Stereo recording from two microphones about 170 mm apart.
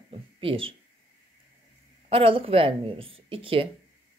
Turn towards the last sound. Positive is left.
turn(degrees=-30)  # may be behind; listen again after turning